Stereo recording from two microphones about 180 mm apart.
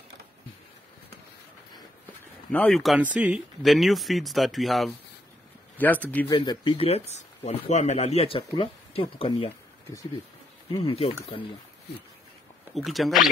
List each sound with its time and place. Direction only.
2.5 s speech: 5° left (ahead or behind)
6.3 s speech: 25° left (ahead or behind)
10.7 s speech: 30° left (ahead or behind)
12.7 s speech: centre (ahead or behind)